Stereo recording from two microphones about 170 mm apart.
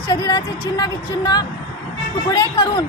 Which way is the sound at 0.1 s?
25° left (ahead or behind).